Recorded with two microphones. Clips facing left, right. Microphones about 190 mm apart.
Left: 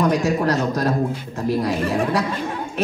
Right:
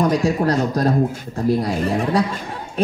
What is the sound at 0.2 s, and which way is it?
Speech, 30° right (ahead or behind).